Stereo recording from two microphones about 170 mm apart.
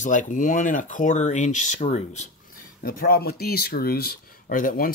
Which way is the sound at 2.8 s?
60° left (ahead or behind).